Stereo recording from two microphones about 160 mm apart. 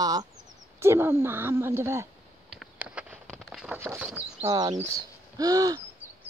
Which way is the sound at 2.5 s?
5° right (ahead or behind).